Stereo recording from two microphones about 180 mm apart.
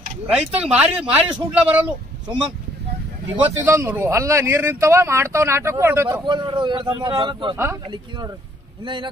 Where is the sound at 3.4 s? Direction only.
10° right (ahead or behind).